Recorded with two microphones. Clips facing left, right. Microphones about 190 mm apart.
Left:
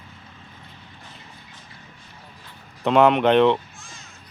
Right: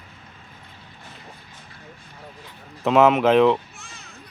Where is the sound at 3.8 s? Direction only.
65° right (ahead or behind).